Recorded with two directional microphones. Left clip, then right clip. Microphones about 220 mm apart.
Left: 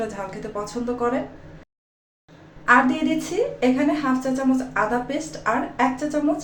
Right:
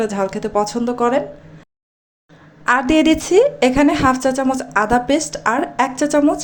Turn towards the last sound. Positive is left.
turn(degrees=-45)  # may be behind; listen again after turning